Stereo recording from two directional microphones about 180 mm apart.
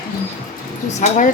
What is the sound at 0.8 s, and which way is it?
Speech, 40° left (ahead or behind).